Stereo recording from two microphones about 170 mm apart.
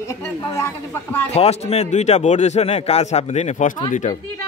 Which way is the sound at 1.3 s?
40° left (ahead or behind).